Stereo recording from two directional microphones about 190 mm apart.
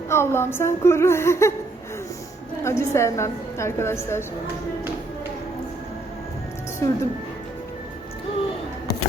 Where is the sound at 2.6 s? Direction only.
15° left (ahead or behind).